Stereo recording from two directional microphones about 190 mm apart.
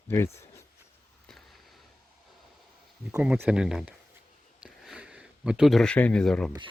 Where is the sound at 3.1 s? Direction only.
5° right (ahead or behind).